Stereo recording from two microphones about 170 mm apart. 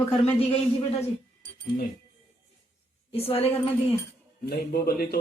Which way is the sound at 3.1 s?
35° left (ahead or behind).